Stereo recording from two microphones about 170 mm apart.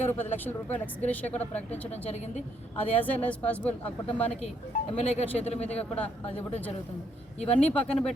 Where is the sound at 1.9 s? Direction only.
40° left (ahead or behind).